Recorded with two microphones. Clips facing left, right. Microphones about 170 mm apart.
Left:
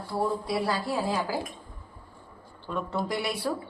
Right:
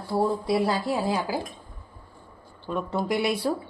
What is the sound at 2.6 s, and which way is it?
Speech, 15° right (ahead or behind).